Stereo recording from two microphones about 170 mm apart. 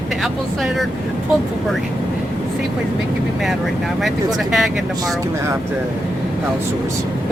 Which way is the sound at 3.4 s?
Centre (ahead or behind).